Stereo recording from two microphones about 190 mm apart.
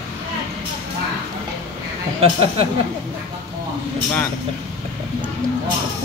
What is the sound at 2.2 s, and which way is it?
Speech, 30° right (ahead or behind).